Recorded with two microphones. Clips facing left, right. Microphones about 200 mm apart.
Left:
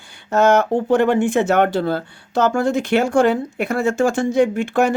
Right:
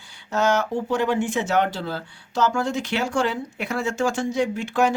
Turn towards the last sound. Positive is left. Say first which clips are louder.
# left 4 dB
turn(degrees=55)  # may be behind; listen again after turning